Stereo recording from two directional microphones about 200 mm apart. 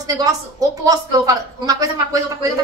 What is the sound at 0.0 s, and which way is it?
A woman's voice, 20° right (ahead or behind).